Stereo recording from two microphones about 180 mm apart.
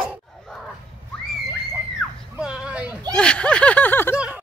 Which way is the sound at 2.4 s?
5° right (ahead or behind).